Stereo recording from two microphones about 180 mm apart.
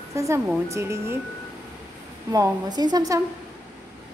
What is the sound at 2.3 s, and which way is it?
Speech, 20° right (ahead or behind).